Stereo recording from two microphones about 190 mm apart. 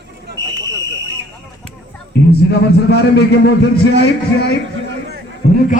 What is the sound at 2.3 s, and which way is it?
A man's voice, 60° left (ahead or behind).